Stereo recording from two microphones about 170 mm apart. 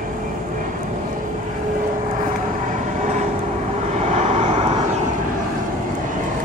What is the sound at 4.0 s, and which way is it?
Vehicle, 40° right (ahead or behind).